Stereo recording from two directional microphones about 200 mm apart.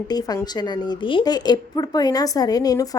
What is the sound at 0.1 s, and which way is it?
A woman's voice, 20° left (ahead or behind).